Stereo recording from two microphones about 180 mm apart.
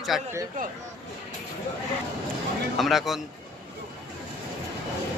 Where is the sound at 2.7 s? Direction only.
Centre (ahead or behind).